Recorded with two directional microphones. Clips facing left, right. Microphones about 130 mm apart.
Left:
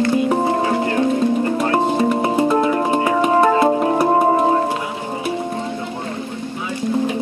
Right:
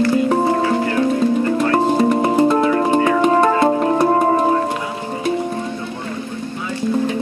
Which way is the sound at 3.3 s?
20° left (ahead or behind).